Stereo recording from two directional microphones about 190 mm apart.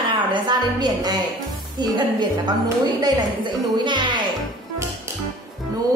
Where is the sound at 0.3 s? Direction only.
20° right (ahead or behind).